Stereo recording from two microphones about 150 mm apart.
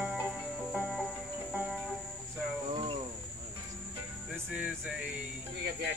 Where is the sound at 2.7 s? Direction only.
30° right (ahead or behind).